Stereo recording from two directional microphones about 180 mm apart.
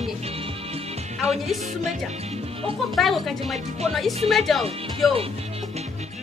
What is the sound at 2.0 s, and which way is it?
Speech, 35° right (ahead or behind).